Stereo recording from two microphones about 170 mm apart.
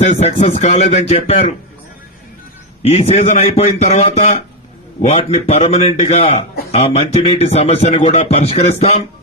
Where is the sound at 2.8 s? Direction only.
40° left (ahead or behind).